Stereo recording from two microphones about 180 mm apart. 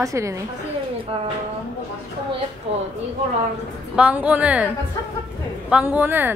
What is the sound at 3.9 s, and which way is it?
Speech, 10° right (ahead or behind).